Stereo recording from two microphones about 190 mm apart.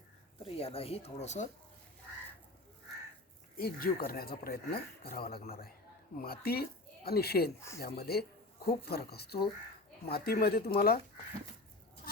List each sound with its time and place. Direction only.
0.3 s speech: 30° left (ahead or behind)
3.6 s speech: 50° left (ahead or behind)